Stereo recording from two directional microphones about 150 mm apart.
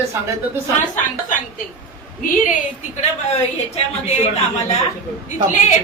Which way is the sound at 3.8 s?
45° left (ahead or behind).